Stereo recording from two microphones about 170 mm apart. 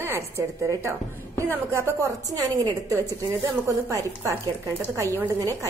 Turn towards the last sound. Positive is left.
turn(degrees=-15)  # may be behind; listen again after turning